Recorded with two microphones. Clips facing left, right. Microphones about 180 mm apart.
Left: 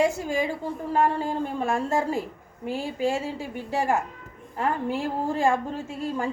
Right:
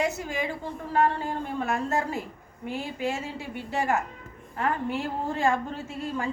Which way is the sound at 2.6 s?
35° left (ahead or behind).